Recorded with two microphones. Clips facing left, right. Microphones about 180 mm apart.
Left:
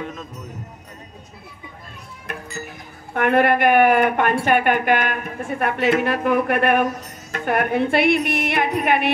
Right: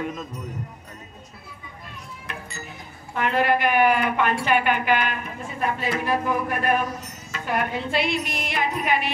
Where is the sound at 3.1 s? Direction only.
55° left (ahead or behind).